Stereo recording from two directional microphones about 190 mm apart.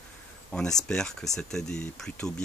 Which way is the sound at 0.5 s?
5° left (ahead or behind).